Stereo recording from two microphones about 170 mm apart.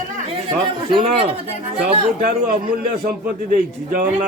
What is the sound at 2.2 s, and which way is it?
A man's voice, 55° right (ahead or behind).